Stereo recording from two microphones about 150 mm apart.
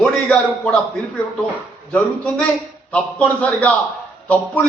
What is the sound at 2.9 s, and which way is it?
A man's voice, 10° left (ahead or behind).